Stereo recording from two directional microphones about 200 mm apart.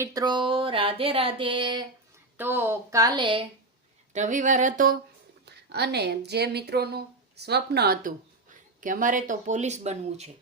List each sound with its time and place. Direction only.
0.0 s speech: 20° right (ahead or behind)
2.4 s speech: 10° right (ahead or behind)
4.1 s speech: 40° right (ahead or behind)
5.5 s speech: 55° right (ahead or behind); by 10.3 s 35° right (ahead or behind)